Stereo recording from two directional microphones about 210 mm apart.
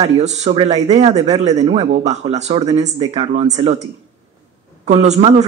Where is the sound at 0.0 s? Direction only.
30° right (ahead or behind).